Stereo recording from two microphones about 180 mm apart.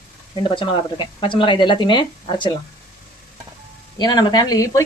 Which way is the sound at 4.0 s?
25° left (ahead or behind).